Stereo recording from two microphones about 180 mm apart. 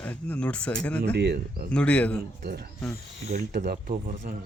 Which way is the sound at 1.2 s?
60° right (ahead or behind).